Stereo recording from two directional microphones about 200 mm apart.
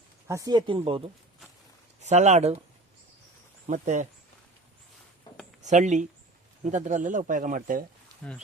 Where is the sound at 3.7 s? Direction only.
40° right (ahead or behind).